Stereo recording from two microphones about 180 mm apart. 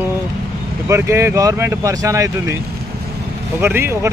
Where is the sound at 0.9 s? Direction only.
15° right (ahead or behind).